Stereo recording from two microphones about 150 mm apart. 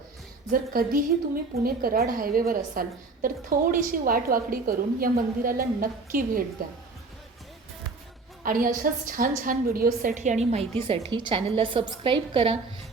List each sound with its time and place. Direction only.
0.5 s a woman's voice: 75° right (ahead or behind)
8.4 s a woman's voice: 70° right (ahead or behind)
10.5 s a woman's voice: 40° right (ahead or behind)